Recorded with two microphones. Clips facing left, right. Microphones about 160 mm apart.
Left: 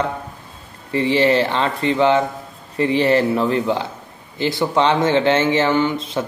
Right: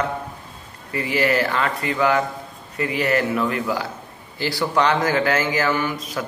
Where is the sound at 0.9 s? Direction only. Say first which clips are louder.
Left 5 dB; 25° left (ahead or behind).